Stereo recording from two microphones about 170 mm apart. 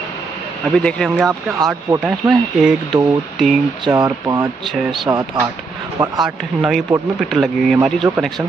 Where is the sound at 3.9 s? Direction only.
20° right (ahead or behind).